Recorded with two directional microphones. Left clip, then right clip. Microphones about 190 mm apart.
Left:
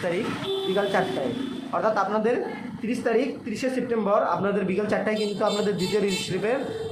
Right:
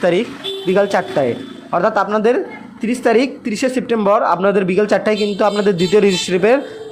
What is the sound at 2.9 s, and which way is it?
A man's voice, 50° right (ahead or behind).